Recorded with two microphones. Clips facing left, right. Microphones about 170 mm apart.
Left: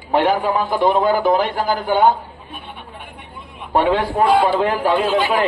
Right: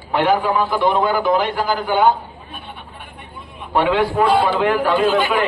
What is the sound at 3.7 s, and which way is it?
A man's voice, 40° left (ahead or behind).